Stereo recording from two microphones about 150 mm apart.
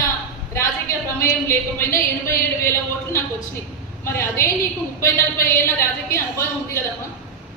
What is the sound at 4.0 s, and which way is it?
Speech, 15° left (ahead or behind).